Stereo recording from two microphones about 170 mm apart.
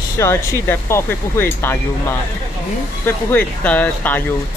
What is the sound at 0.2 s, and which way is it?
Speech, 15° left (ahead or behind).